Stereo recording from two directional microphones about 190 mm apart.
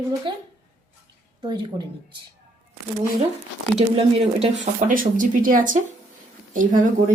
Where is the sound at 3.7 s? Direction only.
30° right (ahead or behind).